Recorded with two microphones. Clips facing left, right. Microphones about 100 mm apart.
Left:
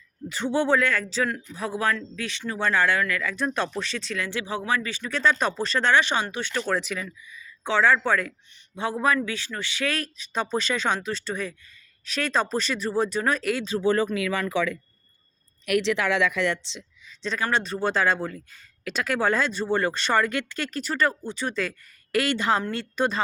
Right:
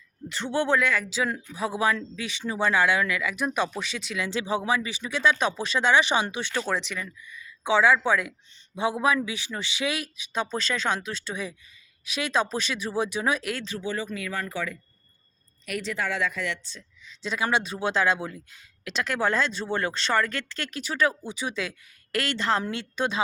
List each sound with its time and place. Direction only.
0.3 s speech: 5° left (ahead or behind)
1.3 s speech: 15° right (ahead or behind)
6.7 s speech: centre (ahead or behind)
7.6 s speech: 10° right (ahead or behind)
13.9 s speech: 60° left (ahead or behind); by 14.8 s 90° left
15.6 s speech: 80° left
17.3 s speech: 10° right (ahead or behind); by 20.7 s 10° left (ahead or behind)
20.7 s speech: centre (ahead or behind)